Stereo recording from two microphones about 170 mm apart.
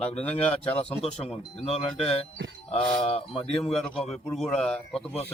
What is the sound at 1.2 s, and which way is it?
Speech, 35° left (ahead or behind).